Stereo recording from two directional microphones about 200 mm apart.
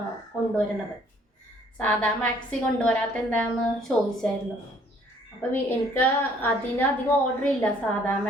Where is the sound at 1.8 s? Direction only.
5° left (ahead or behind).